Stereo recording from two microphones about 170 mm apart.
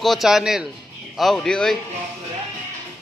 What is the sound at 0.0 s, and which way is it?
A man's voice, centre (ahead or behind).